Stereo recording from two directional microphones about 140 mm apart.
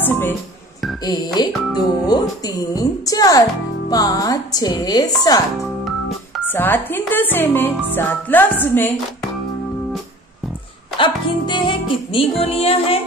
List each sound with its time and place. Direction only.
0.0 s speech: 15° left (ahead or behind)
1.0 s speech: 30° left (ahead or behind)
6.4 s speech: 15° left (ahead or behind)
11.0 s music: 35° left (ahead or behind)